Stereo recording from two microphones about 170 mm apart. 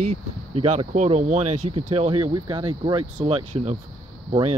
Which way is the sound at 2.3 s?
25° right (ahead or behind).